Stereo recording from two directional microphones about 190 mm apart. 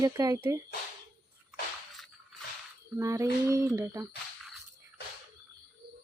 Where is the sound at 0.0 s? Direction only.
15° right (ahead or behind).